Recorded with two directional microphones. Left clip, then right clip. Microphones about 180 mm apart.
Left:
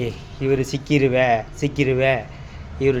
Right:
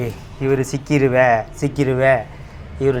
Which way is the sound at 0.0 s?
5° left (ahead or behind).